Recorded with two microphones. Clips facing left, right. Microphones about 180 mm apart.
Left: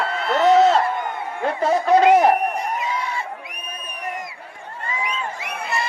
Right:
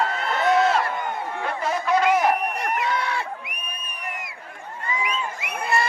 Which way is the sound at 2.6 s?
70° right (ahead or behind).